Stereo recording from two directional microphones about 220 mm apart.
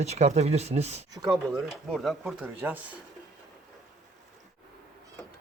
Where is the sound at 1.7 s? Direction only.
Centre (ahead or behind).